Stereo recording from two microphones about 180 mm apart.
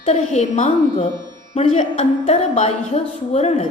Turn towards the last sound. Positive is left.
turn(degrees=35)  # may be behind; listen again after turning